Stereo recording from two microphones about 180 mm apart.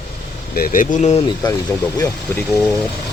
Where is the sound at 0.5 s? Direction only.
50° left (ahead or behind).